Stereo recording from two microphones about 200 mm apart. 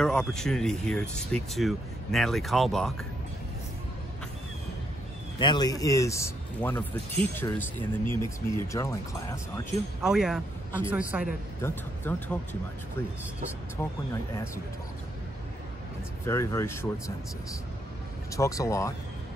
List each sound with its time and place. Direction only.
0.0 s speech: 5° left (ahead or behind)
5.4 s a man's voice: 20° left (ahead or behind)
10.0 s a man's voice: centre (ahead or behind)
11.6 s a man's voice: 10° left (ahead or behind)
13.8 s a man's voice: 10° left (ahead or behind)
16.3 s a man's voice: 15° left (ahead or behind)
18.3 s a man's voice: 15° left (ahead or behind)